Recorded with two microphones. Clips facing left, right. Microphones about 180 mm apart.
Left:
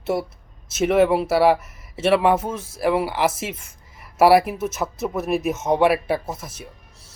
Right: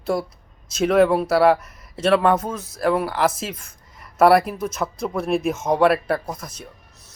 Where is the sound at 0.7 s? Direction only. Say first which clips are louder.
Right 1 dB; 5° left (ahead or behind).